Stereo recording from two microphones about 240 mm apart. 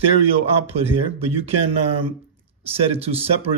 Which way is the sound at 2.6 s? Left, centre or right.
Right.